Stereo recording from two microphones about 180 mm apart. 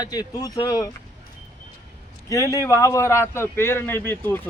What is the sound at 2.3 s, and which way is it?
A man's voice, 15° left (ahead or behind).